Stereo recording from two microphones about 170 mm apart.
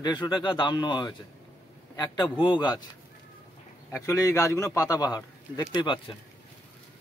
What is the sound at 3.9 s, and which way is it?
A man's voice, 15° left (ahead or behind).